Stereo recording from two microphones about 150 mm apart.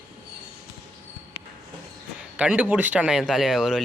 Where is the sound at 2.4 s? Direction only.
10° right (ahead or behind).